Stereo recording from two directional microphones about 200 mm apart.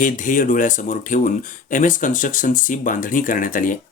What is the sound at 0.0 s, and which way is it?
Speech, 40° left (ahead or behind).